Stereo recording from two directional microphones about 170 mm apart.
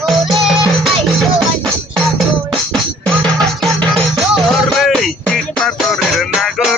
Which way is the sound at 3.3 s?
5° left (ahead or behind).